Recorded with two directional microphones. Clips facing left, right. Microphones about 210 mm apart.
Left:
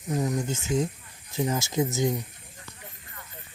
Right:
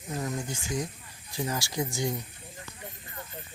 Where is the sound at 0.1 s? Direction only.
20° left (ahead or behind).